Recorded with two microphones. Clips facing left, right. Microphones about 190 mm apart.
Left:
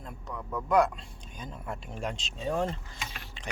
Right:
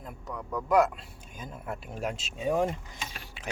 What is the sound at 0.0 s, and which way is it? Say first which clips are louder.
Speech: right 1 dB; 5° right (ahead or behind).